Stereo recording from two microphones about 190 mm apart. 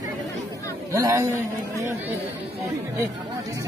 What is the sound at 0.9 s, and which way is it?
Speech, 15° right (ahead or behind).